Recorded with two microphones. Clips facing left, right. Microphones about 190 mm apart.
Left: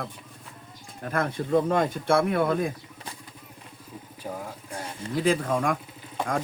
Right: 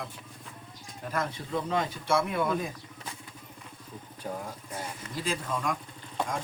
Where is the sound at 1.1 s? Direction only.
55° left (ahead or behind).